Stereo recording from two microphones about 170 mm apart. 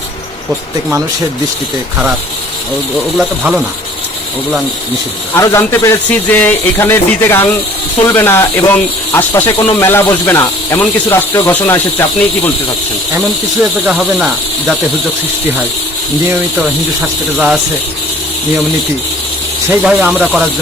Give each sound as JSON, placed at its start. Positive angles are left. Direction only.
{"t": 3.2, "sound": "speech", "side_deg": -5}
{"t": 5.3, "sound": "speech", "side_deg": 15}
{"t": 13.8, "sound": "speech", "side_deg": -5}
{"t": 17.3, "sound": "speech", "side_deg": -5}
{"t": 19.8, "sound": "speech", "side_deg": -5}